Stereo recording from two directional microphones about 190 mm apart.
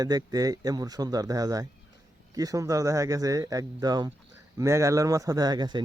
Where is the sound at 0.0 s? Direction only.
20° right (ahead or behind).